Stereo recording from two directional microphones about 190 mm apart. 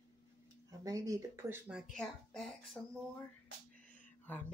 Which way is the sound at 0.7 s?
20° right (ahead or behind).